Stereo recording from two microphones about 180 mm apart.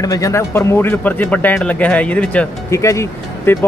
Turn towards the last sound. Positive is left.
turn(degrees=15)  # may be behind; listen again after turning